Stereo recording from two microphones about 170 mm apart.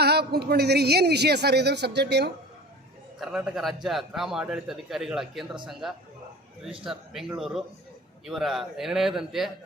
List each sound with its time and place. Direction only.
0.0 s a woman's voice: 70° right (ahead or behind)
3.2 s a man's voice: 5° right (ahead or behind)
6.8 s a man's voice: centre (ahead or behind)